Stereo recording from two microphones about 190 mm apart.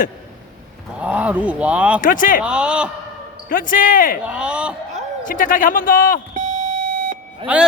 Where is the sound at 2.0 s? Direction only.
45° left (ahead or behind).